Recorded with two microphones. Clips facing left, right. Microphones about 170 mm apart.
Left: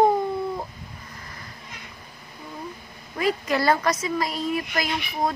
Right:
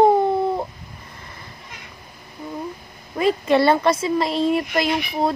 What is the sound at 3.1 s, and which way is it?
Speech, 25° right (ahead or behind).